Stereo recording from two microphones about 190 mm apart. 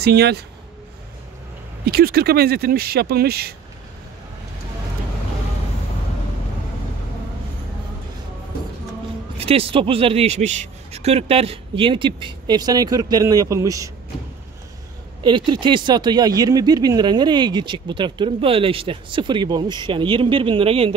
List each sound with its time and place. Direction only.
0.0 s speech: 60° right (ahead or behind)
1.9 s speech: 55° right (ahead or behind)
9.4 s speech: 30° right (ahead or behind)
15.2 s speech: 25° right (ahead or behind)